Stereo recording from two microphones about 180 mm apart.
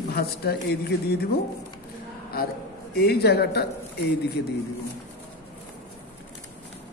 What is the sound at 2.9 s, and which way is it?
Speech, 60° left (ahead or behind).